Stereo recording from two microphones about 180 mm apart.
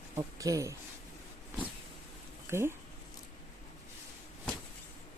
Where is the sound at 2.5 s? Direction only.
15° right (ahead or behind).